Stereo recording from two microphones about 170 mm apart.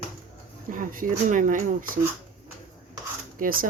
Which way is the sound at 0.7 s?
50° right (ahead or behind).